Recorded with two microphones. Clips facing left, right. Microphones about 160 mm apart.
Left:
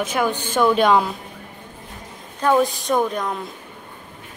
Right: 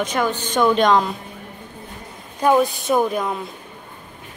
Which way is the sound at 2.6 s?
Centre (ahead or behind).